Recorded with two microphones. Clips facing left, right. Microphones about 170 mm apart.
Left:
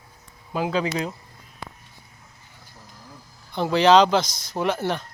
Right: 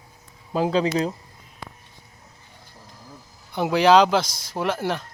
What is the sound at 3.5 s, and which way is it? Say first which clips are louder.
Speech: even; 10° right (ahead or behind).